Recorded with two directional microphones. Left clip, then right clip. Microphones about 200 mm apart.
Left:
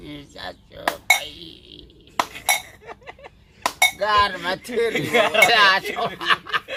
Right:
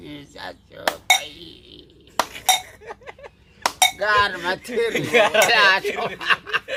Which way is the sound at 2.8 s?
55° right (ahead or behind).